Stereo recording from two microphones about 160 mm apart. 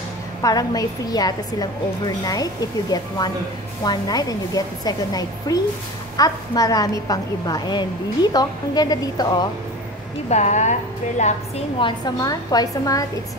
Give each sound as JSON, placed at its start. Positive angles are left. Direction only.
{"t": 0.4, "sound": "a woman's voice", "side_deg": 25}
{"t": 10.3, "sound": "a woman's voice", "side_deg": 45}
{"t": 11.8, "sound": "a woman's voice", "side_deg": 25}